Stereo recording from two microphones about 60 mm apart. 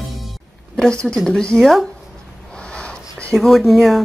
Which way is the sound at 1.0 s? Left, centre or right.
Centre.